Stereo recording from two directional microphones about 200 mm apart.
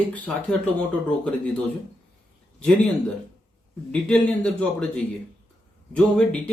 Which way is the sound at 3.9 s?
5° left (ahead or behind).